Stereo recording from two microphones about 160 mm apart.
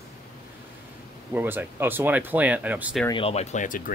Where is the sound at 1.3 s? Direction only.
10° right (ahead or behind).